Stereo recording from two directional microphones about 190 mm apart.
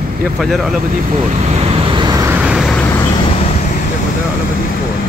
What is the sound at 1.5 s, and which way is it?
Vehicle, 30° right (ahead or behind).